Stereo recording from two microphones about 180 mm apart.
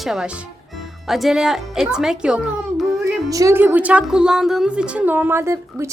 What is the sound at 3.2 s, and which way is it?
A woman's voice, 20° right (ahead or behind).